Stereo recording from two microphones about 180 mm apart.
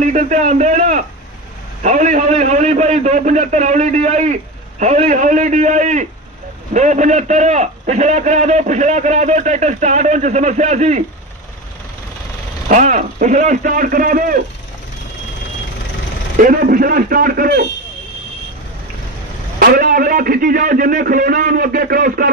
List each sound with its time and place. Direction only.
0.0 s a man's voice: 45° right (ahead or behind)
12.6 s a man's voice: 45° right (ahead or behind)
16.3 s a man's voice: 50° right (ahead or behind)
19.6 s a man's voice: 55° right (ahead or behind)